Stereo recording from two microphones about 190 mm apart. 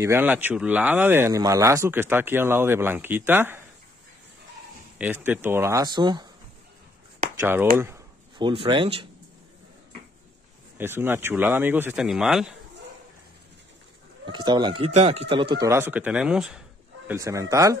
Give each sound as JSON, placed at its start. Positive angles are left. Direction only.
{"t": 0.0, "sound": "speech", "side_deg": -10}
{"t": 4.9, "sound": "speech", "side_deg": -10}
{"t": 7.3, "sound": "speech", "side_deg": -10}
{"t": 8.4, "sound": "speech", "side_deg": -25}
{"t": 10.8, "sound": "speech", "side_deg": -10}
{"t": 14.2, "sound": "speech", "side_deg": -25}
{"t": 17.1, "sound": "speech", "side_deg": -15}